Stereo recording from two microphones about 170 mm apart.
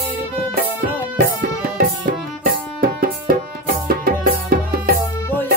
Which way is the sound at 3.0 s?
60° right (ahead or behind).